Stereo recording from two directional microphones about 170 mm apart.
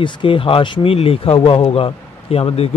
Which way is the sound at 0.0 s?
30° left (ahead or behind).